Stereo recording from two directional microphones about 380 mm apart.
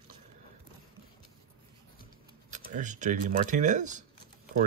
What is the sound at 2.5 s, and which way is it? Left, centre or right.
Speech, centre.